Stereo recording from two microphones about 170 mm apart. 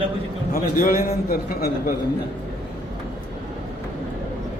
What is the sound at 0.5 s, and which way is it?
A man's voice, 55° left (ahead or behind).